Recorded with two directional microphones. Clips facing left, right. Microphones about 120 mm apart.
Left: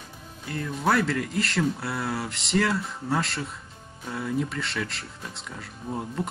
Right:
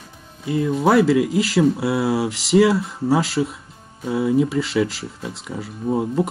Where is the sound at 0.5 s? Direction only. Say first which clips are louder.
Right 8 dB; 5° right (ahead or behind).